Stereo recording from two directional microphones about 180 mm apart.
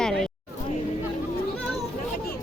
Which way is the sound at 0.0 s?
5° left (ahead or behind).